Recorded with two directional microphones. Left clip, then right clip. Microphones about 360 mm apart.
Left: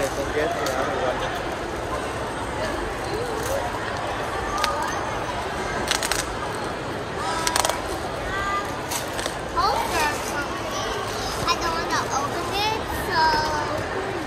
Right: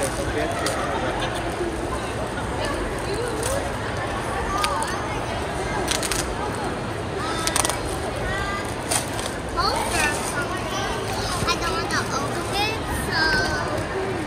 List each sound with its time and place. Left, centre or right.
12.5 s children playing: centre